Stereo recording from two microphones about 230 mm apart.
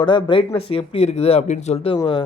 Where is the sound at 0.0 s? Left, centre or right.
Centre.